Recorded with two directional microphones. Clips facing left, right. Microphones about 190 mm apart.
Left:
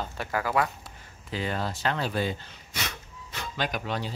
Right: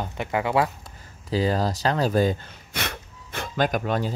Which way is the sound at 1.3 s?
35° right (ahead or behind).